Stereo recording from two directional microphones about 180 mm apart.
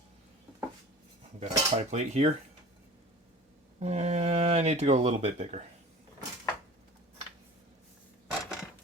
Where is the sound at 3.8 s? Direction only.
35° right (ahead or behind).